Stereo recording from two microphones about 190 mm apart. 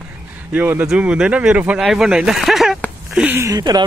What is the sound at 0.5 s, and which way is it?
Speech, 10° right (ahead or behind).